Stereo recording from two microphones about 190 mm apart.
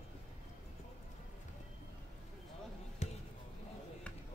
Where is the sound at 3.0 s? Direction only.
40° left (ahead or behind).